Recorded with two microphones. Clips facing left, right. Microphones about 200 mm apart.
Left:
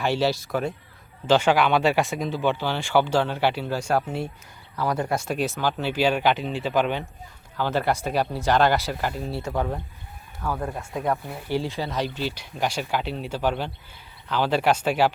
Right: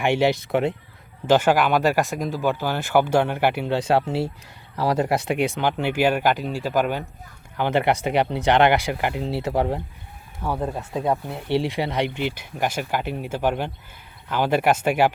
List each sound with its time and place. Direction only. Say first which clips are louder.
0.0 s speech: right 3 dB; 15° right (ahead or behind)
1.3 s speech: right 1 dB; 10° right (ahead or behind)
2.3 s speech: right 1 dB; 10° right (ahead or behind)
7.5 s speech: right 3 dB; 15° right (ahead or behind)
12.3 s speech: right 2 dB; 50° right (ahead or behind)
13.1 s speech: right 2 dB; 10° right (ahead or behind)